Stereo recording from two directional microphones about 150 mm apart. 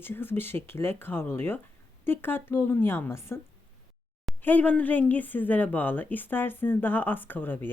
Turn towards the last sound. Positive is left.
turn(degrees=10)  # may be behind; listen again after turning